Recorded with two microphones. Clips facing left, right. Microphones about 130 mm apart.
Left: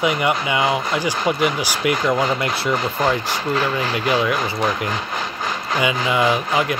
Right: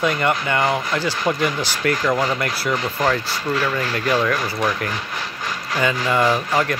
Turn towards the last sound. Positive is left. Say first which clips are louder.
# even
turn(degrees=15)  # may be behind; listen again after turning